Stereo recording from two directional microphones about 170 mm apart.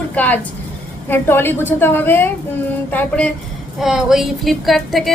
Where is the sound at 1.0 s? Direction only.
10° left (ahead or behind).